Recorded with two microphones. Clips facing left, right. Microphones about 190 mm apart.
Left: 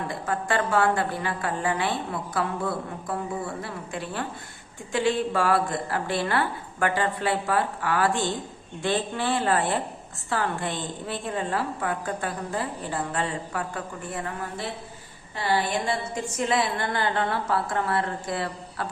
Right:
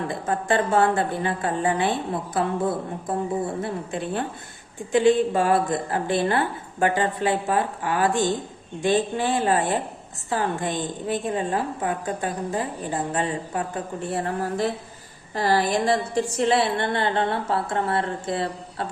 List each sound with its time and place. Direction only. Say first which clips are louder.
0.1 s a woman's voice: right 3 dB; 25° right (ahead or behind)